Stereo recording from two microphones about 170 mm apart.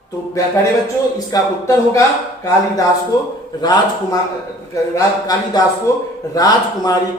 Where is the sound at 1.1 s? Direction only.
20° left (ahead or behind).